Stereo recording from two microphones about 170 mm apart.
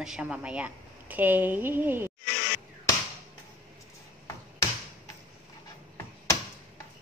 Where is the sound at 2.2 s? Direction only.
65° left (ahead or behind).